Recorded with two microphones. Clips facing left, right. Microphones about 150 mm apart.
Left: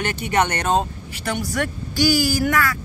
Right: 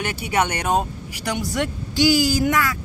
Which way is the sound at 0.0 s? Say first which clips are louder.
Left 1 dB; 10° right (ahead or behind).